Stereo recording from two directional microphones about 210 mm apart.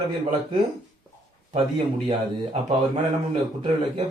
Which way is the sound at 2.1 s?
30° right (ahead or behind).